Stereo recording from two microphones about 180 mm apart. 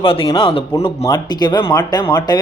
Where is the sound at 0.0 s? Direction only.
30° left (ahead or behind).